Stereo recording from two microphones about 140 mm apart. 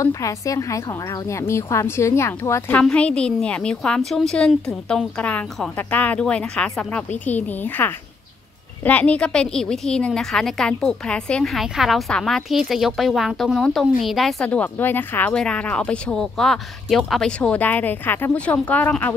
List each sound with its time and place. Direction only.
0.0 s a woman's voice: 25° left (ahead or behind)
2.8 s a woman's voice: 10° left (ahead or behind)